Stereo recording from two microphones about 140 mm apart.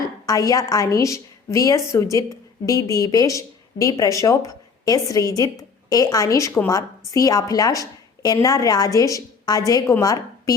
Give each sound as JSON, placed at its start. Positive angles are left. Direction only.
{"t": 0.3, "sound": "a woman's voice", "side_deg": 25}